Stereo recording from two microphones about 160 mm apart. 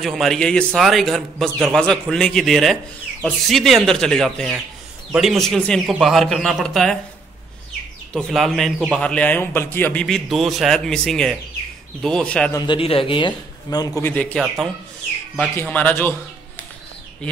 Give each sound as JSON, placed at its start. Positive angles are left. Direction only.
{"t": 0.0, "sound": "a man's voice", "side_deg": 0}
{"t": 8.1, "sound": "a man's voice", "side_deg": 5}
{"t": 12.5, "sound": "a man's voice", "side_deg": 30}
{"t": 14.1, "sound": "speech", "side_deg": 5}